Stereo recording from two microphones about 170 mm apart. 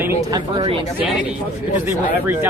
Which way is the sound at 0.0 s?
15° right (ahead or behind).